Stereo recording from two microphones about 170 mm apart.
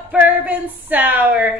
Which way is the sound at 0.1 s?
10° right (ahead or behind).